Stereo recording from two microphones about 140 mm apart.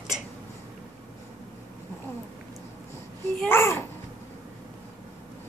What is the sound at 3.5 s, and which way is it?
Speech, 20° left (ahead or behind).